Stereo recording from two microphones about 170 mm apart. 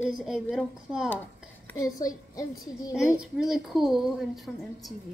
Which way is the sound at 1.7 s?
20° left (ahead or behind).